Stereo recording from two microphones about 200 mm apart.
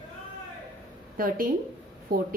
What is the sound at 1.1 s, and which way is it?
A woman's voice, 45° right (ahead or behind).